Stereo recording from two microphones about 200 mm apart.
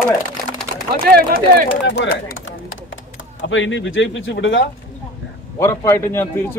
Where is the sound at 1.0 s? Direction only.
50° right (ahead or behind).